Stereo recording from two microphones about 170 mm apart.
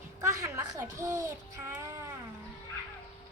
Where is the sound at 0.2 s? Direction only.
20° right (ahead or behind).